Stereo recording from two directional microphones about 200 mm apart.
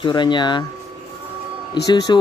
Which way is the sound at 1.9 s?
20° left (ahead or behind).